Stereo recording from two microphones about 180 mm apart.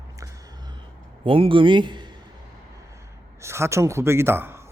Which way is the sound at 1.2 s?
30° right (ahead or behind).